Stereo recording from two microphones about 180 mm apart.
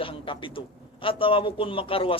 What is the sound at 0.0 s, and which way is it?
A man's voice, 30° left (ahead or behind).